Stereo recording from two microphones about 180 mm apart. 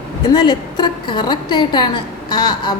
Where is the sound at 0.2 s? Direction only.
25° left (ahead or behind).